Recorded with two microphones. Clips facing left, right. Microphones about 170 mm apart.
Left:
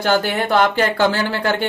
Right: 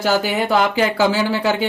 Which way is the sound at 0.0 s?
5° right (ahead or behind).